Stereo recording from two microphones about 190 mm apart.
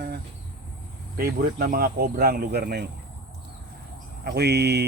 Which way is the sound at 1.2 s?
55° right (ahead or behind).